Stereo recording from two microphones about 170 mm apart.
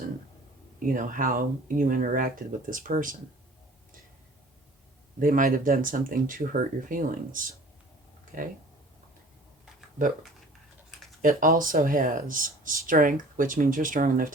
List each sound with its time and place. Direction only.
0.8 s speech: 55° right (ahead or behind)
5.2 s speech: 55° right (ahead or behind)
11.2 s speech: 55° right (ahead or behind)